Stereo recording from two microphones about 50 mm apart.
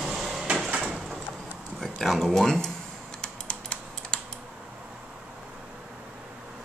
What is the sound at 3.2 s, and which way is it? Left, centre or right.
Typing, left.